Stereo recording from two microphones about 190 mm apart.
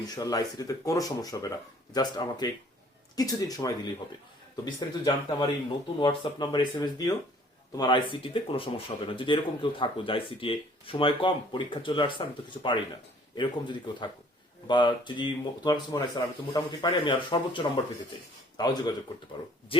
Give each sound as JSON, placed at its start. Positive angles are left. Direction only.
{"t": 0.0, "sound": "speech", "side_deg": 20}